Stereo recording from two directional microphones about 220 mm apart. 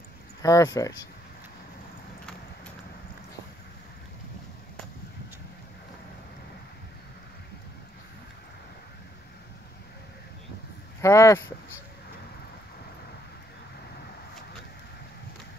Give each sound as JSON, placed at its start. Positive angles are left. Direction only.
{"t": 0.4, "sound": "speech", "side_deg": 15}
{"t": 11.0, "sound": "speech", "side_deg": 15}